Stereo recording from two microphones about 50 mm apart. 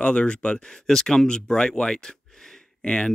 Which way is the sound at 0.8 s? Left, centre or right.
Centre.